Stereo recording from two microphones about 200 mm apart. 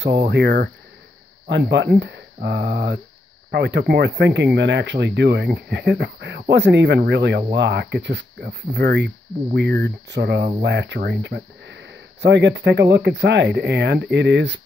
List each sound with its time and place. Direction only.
0.0 s speech: 60° right (ahead or behind)
1.7 s speech: 60° right (ahead or behind)